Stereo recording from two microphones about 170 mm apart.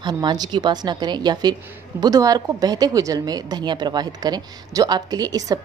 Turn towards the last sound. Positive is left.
turn(degrees=-20)  # may be behind; listen again after turning